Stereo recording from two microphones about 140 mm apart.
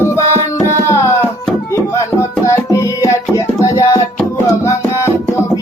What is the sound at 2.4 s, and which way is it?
Music, 25° left (ahead or behind).